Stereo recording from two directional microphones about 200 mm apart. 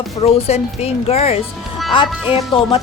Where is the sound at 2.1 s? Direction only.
5° right (ahead or behind).